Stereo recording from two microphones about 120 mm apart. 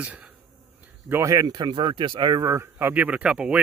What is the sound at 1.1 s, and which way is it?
Speech, 25° right (ahead or behind).